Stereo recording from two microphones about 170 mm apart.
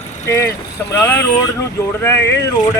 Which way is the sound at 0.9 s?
10° left (ahead or behind).